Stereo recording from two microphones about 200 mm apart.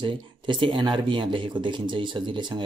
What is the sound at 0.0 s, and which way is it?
Speech, 25° right (ahead or behind).